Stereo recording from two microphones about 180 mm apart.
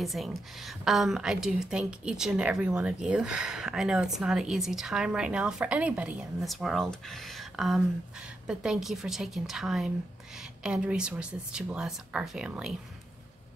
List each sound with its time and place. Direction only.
0.0 s a woman's voice: centre (ahead or behind)